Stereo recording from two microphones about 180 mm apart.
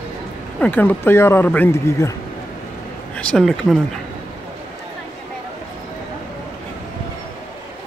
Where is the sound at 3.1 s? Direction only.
5° left (ahead or behind).